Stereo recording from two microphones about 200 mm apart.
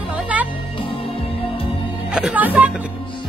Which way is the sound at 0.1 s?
5° right (ahead or behind).